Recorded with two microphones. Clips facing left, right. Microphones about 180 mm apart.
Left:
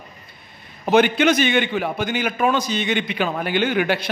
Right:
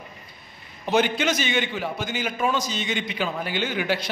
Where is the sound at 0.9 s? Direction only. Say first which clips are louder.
Left 6 dB; 60° left (ahead or behind).